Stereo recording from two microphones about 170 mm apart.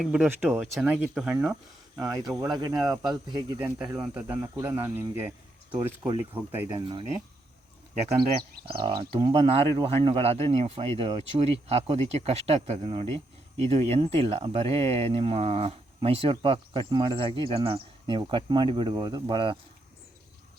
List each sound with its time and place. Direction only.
0.0 s speech: 5° right (ahead or behind)
2.0 s speech: 20° right (ahead or behind)
6.3 s speech: 10° right (ahead or behind)
6.7 s speech: 25° right (ahead or behind)
8.6 s speech: 30° right (ahead or behind)